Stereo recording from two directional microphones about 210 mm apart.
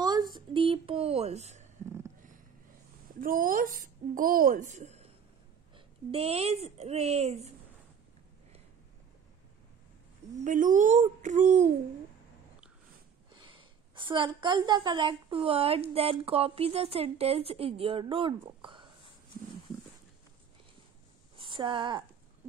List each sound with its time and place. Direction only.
0.0 s a sound: 20° right (ahead or behind)
3.2 s a woman's voice: 40° right (ahead or behind)
6.1 s a woman's voice: 30° right (ahead or behind)
10.4 s speech: 40° right (ahead or behind)
13.3 s a woman's voice: 25° right (ahead or behind)
21.4 s speech: 25° right (ahead or behind)